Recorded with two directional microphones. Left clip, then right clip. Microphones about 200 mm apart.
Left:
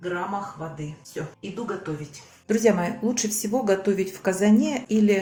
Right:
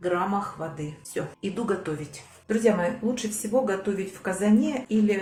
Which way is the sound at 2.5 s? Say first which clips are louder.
Left 2 dB; 40° left (ahead or behind).